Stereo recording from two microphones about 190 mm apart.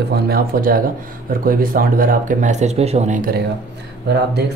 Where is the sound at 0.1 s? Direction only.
50° right (ahead or behind).